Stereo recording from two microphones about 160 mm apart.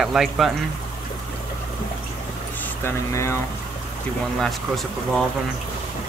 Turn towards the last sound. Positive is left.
turn(degrees=0)  # may be behind; listen again after turning